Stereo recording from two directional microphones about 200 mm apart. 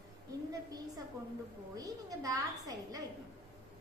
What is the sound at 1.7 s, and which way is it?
A woman's voice, 20° right (ahead or behind).